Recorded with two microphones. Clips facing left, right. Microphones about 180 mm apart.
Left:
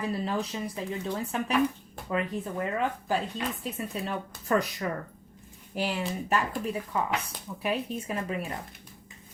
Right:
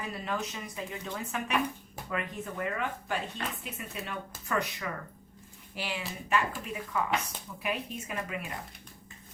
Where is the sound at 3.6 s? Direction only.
35° left (ahead or behind).